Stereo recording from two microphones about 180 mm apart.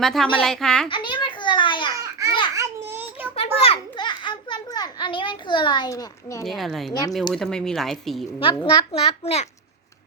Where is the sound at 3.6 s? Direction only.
30° left (ahead or behind).